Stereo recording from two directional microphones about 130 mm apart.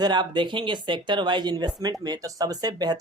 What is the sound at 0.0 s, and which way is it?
Speech, 35° right (ahead or behind).